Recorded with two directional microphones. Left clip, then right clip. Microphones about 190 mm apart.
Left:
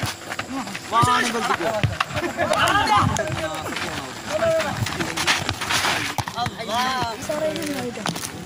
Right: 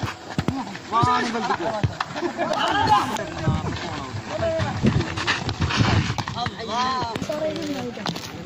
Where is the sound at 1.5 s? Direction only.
15° left (ahead or behind).